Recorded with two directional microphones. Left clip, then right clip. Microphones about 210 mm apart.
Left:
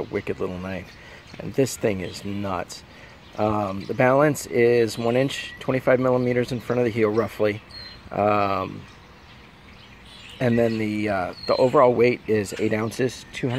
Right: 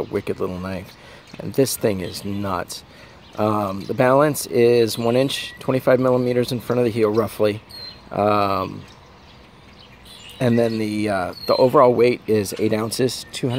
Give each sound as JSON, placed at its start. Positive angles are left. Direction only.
{"t": 0.0, "sound": "speech", "side_deg": -15}
{"t": 10.4, "sound": "speech", "side_deg": -15}